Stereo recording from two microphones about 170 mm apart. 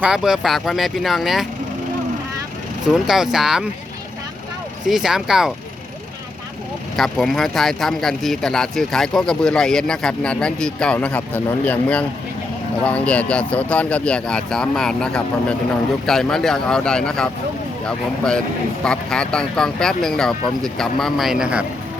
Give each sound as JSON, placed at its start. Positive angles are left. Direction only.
{"t": 0.0, "sound": "speech", "side_deg": -5}
{"t": 2.9, "sound": "speech", "side_deg": 0}
{"t": 4.9, "sound": "speech", "side_deg": 0}
{"t": 6.9, "sound": "speech", "side_deg": 0}